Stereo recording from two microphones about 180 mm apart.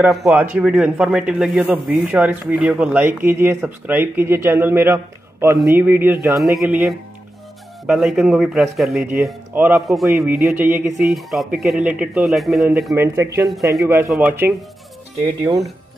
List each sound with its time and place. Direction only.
0.0 s a man's voice: 5° right (ahead or behind)
9.8 s a man's voice: centre (ahead or behind)